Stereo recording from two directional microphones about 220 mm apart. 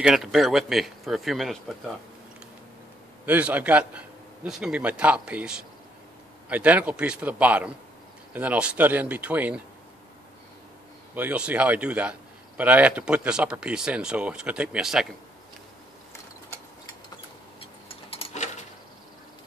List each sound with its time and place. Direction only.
0.0 s speech: centre (ahead or behind)
3.3 s speech: 5° right (ahead or behind)
11.1 s speech: 5° right (ahead or behind)
17.6 s a sound: 25° left (ahead or behind)